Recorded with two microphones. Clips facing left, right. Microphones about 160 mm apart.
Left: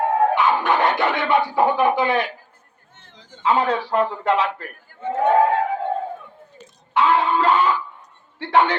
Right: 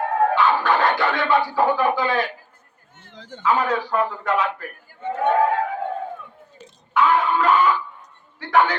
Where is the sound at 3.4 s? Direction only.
30° left (ahead or behind).